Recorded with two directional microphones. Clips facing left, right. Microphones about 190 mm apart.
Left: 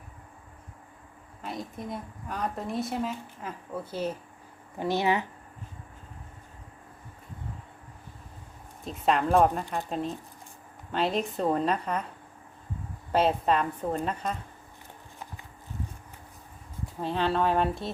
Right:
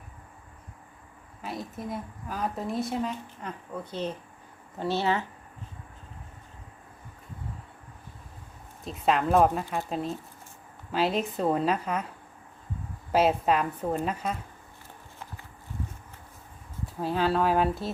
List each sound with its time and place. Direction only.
1.4 s a woman's voice: 5° right (ahead or behind); by 5.2 s 15° left (ahead or behind)
8.8 s a woman's voice: centre (ahead or behind)
13.1 s a woman's voice: 5° right (ahead or behind)
17.0 s a woman's voice: 5° right (ahead or behind)